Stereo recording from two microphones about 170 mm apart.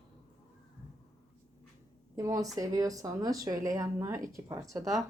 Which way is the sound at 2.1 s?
20° right (ahead or behind).